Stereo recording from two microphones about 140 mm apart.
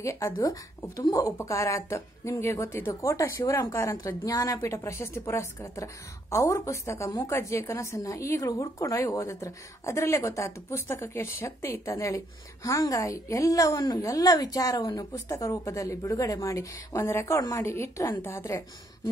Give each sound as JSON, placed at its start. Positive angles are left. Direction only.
{"t": 0.0, "sound": "a woman's voice", "side_deg": 20}